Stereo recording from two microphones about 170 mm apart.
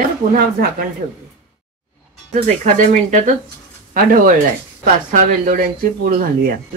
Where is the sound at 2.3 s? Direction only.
40° right (ahead or behind).